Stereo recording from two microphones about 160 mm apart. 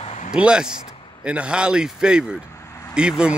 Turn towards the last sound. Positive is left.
turn(degrees=-5)  # may be behind; listen again after turning